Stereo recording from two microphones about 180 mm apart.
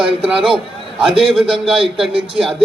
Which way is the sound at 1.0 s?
5° right (ahead or behind).